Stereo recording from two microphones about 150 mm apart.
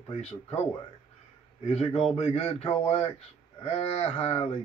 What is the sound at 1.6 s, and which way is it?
Speech, 45° left (ahead or behind).